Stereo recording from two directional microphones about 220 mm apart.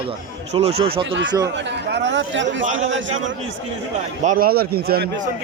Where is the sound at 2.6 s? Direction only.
35° right (ahead or behind).